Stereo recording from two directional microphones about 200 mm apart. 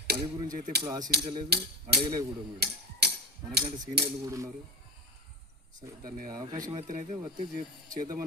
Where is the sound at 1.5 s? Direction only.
55° right (ahead or behind).